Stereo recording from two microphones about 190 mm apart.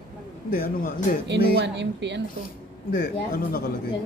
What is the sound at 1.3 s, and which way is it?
Speech, 65° right (ahead or behind).